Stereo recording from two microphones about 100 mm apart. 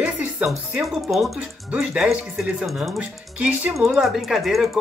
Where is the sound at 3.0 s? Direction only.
15° right (ahead or behind).